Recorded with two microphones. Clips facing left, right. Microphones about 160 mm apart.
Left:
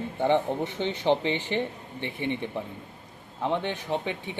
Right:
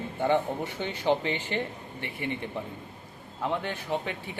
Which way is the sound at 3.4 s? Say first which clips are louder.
Left 3 dB; 20° left (ahead or behind).